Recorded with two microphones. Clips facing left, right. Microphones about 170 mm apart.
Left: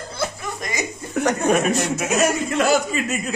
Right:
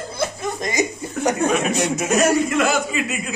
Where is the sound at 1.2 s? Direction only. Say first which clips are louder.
Even; 65° left (ahead or behind).